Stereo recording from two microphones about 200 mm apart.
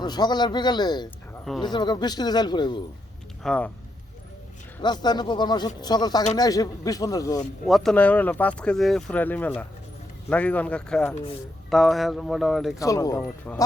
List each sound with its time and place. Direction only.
0.0 s speech: 20° left (ahead or behind)
3.4 s speech: 5° left (ahead or behind)
4.8 s speech: 20° left (ahead or behind)
7.7 s speech: 5° left (ahead or behind)
12.8 s speech: 15° left (ahead or behind)